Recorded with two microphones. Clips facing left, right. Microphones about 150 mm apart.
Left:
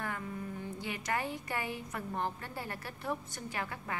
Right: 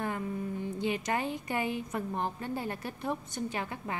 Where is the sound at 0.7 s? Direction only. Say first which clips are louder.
Right 5 dB; 20° right (ahead or behind).